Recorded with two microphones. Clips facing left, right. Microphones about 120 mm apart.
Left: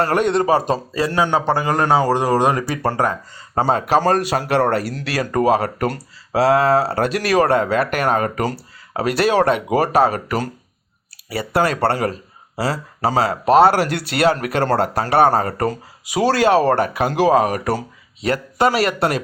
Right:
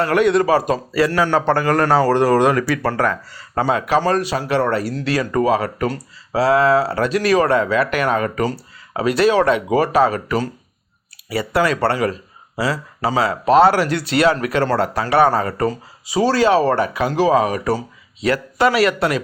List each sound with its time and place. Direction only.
0.0 s a man's voice: 40° left (ahead or behind); by 3.6 s 20° left (ahead or behind)
3.6 s speech: 35° left (ahead or behind)
7.0 s speech: 55° left (ahead or behind)
12.5 s speech: 35° left (ahead or behind)